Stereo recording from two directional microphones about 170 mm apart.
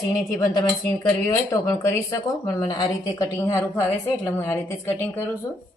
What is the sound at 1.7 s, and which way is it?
A woman's voice, 20° left (ahead or behind).